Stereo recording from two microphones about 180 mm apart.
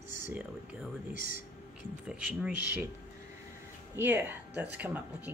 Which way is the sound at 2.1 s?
5° right (ahead or behind).